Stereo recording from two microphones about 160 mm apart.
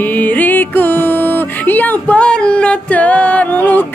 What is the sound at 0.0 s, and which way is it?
Music, 10° left (ahead or behind).